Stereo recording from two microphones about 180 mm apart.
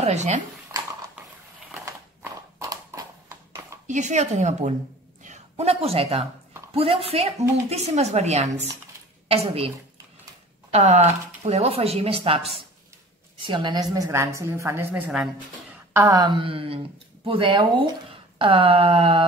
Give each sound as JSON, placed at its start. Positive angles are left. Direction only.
{"t": 0.0, "sound": "a woman's voice", "side_deg": -40}
{"t": 2.6, "sound": "a sound", "side_deg": -20}
{"t": 3.8, "sound": "a woman's voice", "side_deg": -40}
{"t": 10.7, "sound": "a woman's voice", "side_deg": -40}
{"t": 13.5, "sound": "a woman's voice", "side_deg": -25}